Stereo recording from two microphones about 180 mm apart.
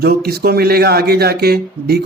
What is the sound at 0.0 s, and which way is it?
A man's voice, 60° right (ahead or behind).